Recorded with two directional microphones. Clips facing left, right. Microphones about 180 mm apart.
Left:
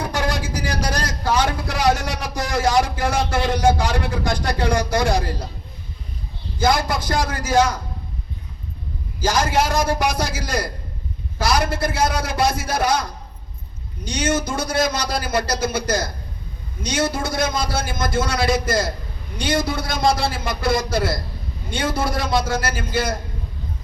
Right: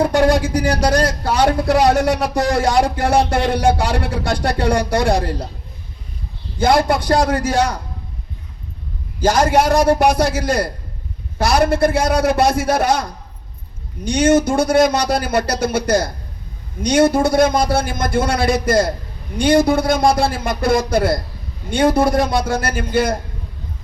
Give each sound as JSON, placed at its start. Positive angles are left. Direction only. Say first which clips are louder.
{"t": 0.2, "sound": "speech", "louder": "right 9 dB", "side_deg": -60}
{"t": 6.6, "sound": "speech", "louder": "right 5 dB", "side_deg": -60}
{"t": 9.2, "sound": "speech", "louder": "right 6 dB", "side_deg": -55}
{"t": 14.1, "sound": "speech", "louder": "right 8 dB", "side_deg": -60}